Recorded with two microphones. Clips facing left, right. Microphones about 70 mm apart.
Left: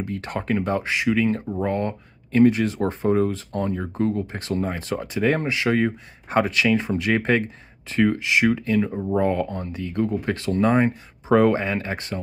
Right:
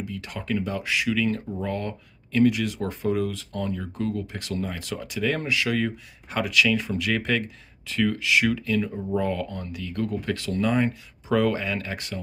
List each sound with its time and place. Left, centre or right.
0.0 s speech: left